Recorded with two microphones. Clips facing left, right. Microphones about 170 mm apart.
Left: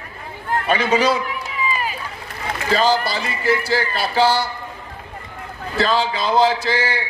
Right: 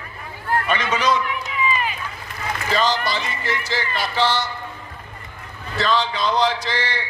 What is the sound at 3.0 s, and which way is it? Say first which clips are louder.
Speech: left 1 dB; 35° left (ahead or behind).